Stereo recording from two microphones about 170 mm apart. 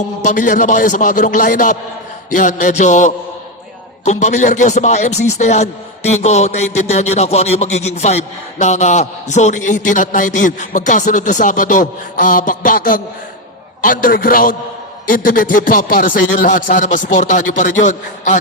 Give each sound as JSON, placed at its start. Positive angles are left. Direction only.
{"t": 0.2, "sound": "a man's voice", "side_deg": 45}